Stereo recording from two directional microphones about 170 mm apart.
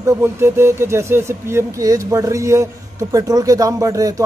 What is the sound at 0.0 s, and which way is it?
Speech, 15° right (ahead or behind).